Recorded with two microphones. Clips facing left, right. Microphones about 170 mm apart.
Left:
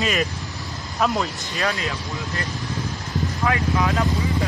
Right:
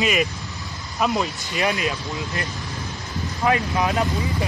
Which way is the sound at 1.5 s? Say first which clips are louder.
Right 3 dB; 15° right (ahead or behind).